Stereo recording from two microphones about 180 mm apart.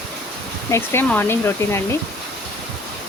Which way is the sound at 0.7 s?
15° left (ahead or behind).